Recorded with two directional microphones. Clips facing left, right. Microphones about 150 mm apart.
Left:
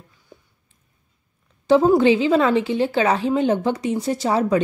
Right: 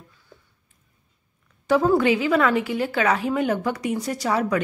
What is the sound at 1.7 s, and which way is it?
A woman's voice, 25° left (ahead or behind).